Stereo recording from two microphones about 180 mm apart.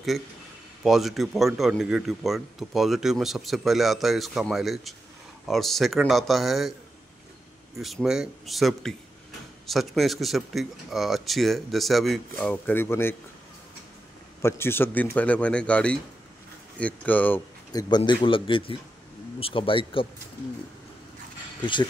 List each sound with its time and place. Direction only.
0.8 s speech: centre (ahead or behind)
7.7 s speech: centre (ahead or behind)
14.4 s a man's voice: 15° left (ahead or behind)
17.7 s speech: 25° left (ahead or behind)
21.5 s speech: 25° left (ahead or behind)